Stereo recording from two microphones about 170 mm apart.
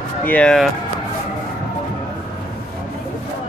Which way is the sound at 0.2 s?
10° left (ahead or behind).